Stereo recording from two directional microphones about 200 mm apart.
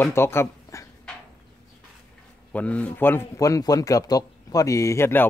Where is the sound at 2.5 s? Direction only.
5° left (ahead or behind).